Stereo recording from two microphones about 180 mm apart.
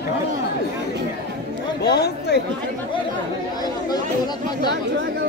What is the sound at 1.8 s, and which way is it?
Speech, 65° left (ahead or behind).